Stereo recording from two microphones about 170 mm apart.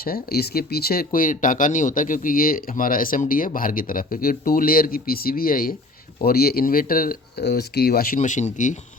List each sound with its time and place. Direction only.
0.0 s speech: 65° left (ahead or behind); by 8.8 s 45° left (ahead or behind)